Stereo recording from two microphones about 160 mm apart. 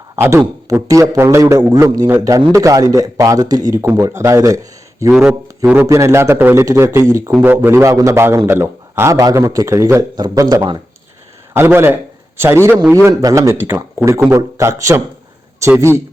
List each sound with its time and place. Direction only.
0.2 s a man's voice: 15° right (ahead or behind)
5.1 s a man's voice: 10° right (ahead or behind); by 10.8 s 25° right (ahead or behind)
11.5 s a man's voice: 15° right (ahead or behind)